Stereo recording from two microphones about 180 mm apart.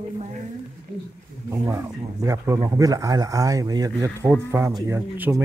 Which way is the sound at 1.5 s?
15° right (ahead or behind).